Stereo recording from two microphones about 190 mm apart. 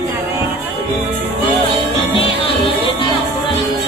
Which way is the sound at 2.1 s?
30° left (ahead or behind).